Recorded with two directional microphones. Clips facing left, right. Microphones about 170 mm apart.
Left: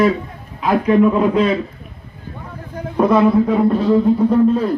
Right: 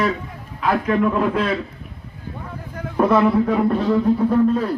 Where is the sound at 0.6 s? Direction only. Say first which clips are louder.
Left 5 dB; 20° left (ahead or behind).